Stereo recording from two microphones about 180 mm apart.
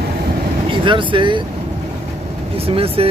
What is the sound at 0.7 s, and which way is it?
Speech, 30° right (ahead or behind).